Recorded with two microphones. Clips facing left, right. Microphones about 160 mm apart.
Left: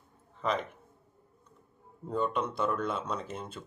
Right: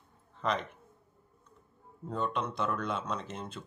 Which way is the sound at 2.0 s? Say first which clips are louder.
Left 3 dB; 10° left (ahead or behind).